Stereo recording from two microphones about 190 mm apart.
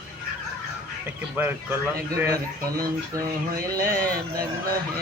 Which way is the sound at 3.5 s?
50° right (ahead or behind).